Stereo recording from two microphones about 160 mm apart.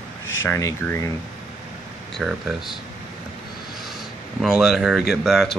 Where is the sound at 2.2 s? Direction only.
Centre (ahead or behind).